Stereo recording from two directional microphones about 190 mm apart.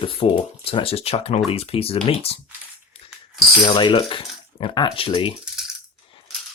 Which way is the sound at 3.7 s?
25° left (ahead or behind).